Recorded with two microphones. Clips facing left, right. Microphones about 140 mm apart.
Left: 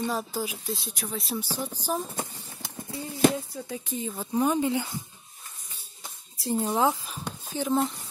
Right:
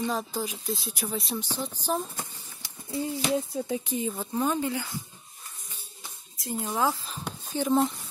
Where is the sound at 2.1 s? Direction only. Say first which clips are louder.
Left 5 dB; 35° left (ahead or behind).